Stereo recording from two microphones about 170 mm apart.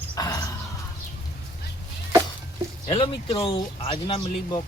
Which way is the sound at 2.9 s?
35° left (ahead or behind).